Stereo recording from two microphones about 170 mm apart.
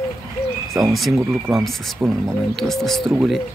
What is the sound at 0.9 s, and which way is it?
Speech, centre (ahead or behind).